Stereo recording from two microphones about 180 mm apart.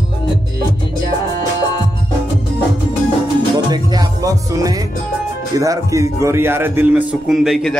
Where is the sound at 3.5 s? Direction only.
20° right (ahead or behind).